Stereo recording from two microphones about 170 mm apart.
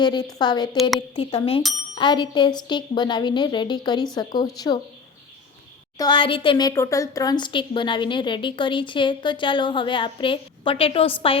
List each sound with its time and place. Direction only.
0.0 s a woman's voice: 25° left (ahead or behind)
6.0 s speech: 25° left (ahead or behind)